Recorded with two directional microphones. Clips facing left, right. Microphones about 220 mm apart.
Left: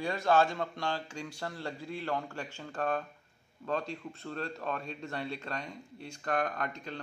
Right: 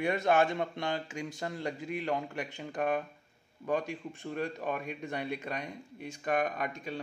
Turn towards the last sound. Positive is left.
turn(degrees=-10)  # may be behind; listen again after turning